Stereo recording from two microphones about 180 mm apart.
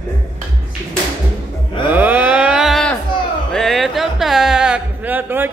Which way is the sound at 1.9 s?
10° right (ahead or behind).